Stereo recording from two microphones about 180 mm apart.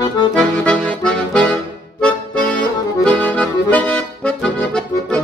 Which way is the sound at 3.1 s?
5° left (ahead or behind).